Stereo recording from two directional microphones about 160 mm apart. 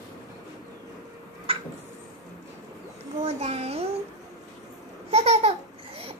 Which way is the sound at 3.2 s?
40° right (ahead or behind).